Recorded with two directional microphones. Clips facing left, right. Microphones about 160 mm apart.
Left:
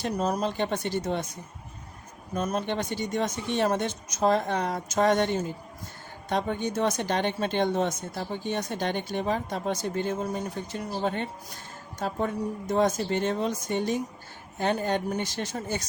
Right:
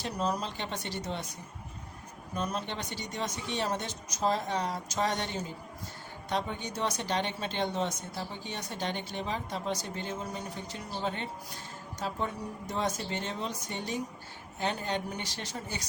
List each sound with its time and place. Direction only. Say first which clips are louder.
0.0 s speech: left 5 dB; 45° left (ahead or behind)
2.3 s speech: left 6 dB; 45° left (ahead or behind)